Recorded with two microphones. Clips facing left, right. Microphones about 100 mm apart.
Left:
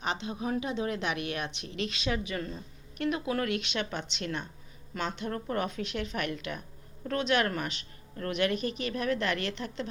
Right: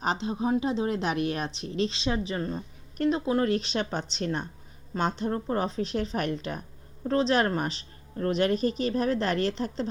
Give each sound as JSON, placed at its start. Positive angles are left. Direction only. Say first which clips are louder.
{"t": 0.0, "sound": "a woman's voice", "louder": "right 5 dB", "side_deg": -35}
{"t": 5.3, "sound": "a woman's voice", "louder": "right 4 dB", "side_deg": -30}